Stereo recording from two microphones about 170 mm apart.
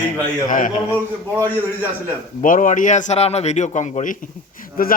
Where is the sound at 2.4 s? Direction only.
50° left (ahead or behind).